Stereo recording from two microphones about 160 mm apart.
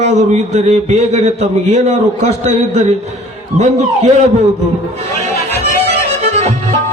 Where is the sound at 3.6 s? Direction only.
45° right (ahead or behind).